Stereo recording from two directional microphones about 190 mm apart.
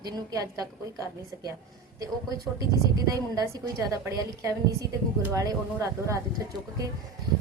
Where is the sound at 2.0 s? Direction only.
20° right (ahead or behind).